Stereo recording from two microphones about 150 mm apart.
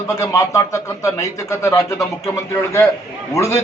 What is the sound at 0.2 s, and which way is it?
A man's voice, 20° left (ahead or behind).